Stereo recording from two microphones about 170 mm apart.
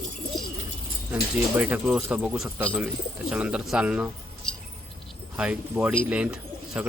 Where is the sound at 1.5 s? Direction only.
10° right (ahead or behind).